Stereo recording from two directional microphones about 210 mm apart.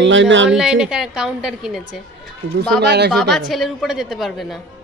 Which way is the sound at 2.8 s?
50° right (ahead or behind).